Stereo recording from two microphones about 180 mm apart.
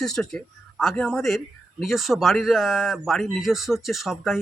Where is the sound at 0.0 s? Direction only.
5° left (ahead or behind).